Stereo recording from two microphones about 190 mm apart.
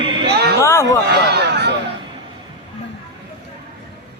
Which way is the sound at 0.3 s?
55° right (ahead or behind).